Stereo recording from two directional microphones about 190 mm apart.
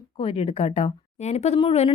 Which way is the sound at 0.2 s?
30° left (ahead or behind).